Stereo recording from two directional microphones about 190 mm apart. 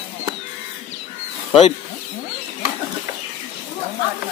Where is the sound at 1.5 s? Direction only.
35° left (ahead or behind).